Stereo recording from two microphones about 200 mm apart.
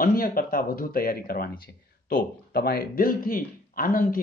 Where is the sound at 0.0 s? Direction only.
45° left (ahead or behind).